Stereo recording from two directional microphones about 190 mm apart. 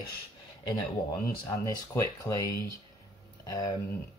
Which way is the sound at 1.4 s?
20° left (ahead or behind).